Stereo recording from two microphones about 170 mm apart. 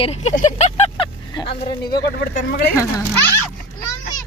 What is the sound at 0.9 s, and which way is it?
Vehicle, 30° left (ahead or behind).